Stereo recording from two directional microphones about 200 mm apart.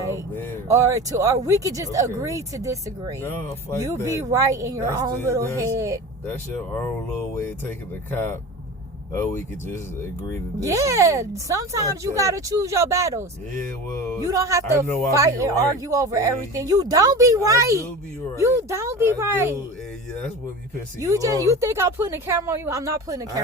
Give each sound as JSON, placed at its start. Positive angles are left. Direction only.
{"t": 0.7, "sound": "speech", "side_deg": -15}
{"t": 7.1, "sound": "speech", "side_deg": 10}
{"t": 9.1, "sound": "speech", "side_deg": 10}
{"t": 10.6, "sound": "speech", "side_deg": -15}
{"t": 21.0, "sound": "speech", "side_deg": -15}